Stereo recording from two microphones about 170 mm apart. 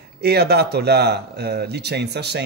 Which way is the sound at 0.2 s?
70° right (ahead or behind).